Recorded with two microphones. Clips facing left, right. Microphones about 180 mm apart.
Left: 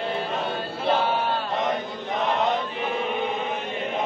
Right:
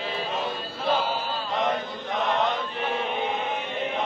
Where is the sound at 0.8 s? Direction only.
60° left (ahead or behind).